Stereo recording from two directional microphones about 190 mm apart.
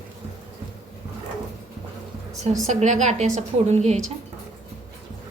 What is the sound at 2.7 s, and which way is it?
A woman's voice, 40° right (ahead or behind).